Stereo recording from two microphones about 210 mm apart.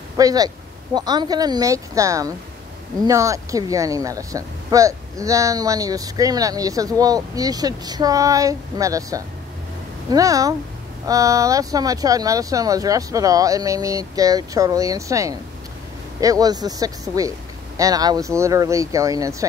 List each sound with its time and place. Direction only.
0.2 s speech: 15° right (ahead or behind)